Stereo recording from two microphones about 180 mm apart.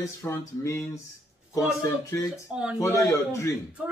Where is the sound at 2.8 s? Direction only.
15° left (ahead or behind).